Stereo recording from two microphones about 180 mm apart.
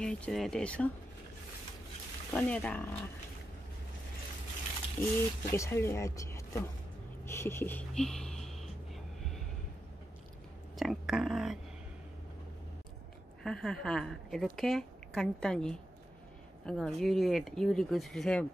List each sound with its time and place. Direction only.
0.0 s a woman's voice: 5° left (ahead or behind)
2.3 s speech: 10° left (ahead or behind)
5.0 s speech: 15° left (ahead or behind)
7.2 s a sound: 15° left (ahead or behind)
10.8 s a woman's voice: centre (ahead or behind)
13.4 s a woman's voice: 5° left (ahead or behind)